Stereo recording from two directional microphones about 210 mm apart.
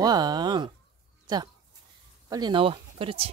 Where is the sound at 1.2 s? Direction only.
20° right (ahead or behind).